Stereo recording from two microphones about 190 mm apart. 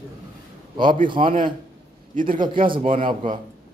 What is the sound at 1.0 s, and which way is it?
Speech, 25° right (ahead or behind).